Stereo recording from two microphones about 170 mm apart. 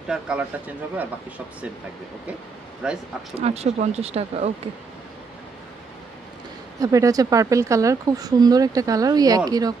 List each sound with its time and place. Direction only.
0.1 s speech: 5° right (ahead or behind)
2.8 s speech: 5° right (ahead or behind)
3.3 s speech: 40° right (ahead or behind)
6.8 s speech: 20° right (ahead or behind)